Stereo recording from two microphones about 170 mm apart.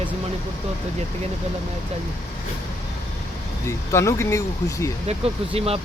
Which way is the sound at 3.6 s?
15° left (ahead or behind).